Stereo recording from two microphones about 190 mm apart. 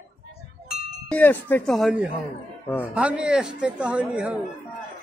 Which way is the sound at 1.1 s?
10° left (ahead or behind).